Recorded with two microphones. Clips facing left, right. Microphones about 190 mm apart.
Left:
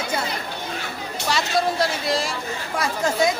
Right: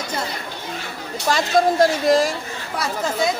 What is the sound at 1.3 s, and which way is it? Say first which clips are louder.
Speech: right 5 dB; 45° right (ahead or behind).